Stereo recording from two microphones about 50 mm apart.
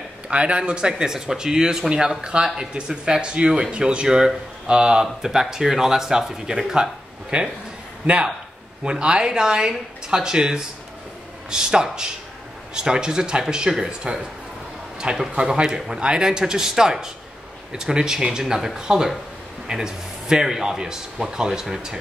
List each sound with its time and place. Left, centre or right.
0.3 s speech: right
8.8 s speech: centre
15.3 s speech: centre